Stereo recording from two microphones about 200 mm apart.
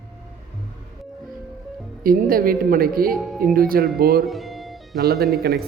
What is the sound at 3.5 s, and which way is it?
Speech, 45° right (ahead or behind).